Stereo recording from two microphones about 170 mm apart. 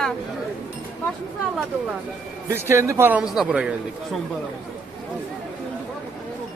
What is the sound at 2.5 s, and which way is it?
Speech, 15° right (ahead or behind).